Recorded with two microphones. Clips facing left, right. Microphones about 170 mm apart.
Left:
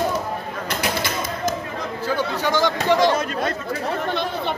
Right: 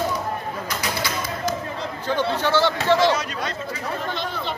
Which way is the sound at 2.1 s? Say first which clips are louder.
Right 2 dB; 10° left (ahead or behind).